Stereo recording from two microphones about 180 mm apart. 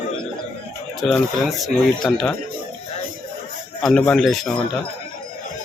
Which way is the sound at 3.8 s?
5° left (ahead or behind).